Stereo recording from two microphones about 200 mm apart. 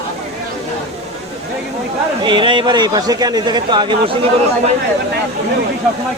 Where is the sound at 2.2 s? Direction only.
25° right (ahead or behind).